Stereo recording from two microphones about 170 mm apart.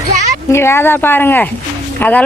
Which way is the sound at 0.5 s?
15° left (ahead or behind).